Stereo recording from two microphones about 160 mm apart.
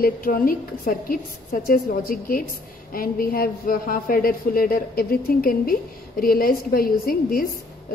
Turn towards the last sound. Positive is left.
turn(degrees=65)  # may be behind; listen again after turning